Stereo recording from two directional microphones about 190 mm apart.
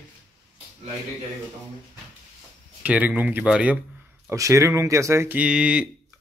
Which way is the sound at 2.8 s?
5° right (ahead or behind).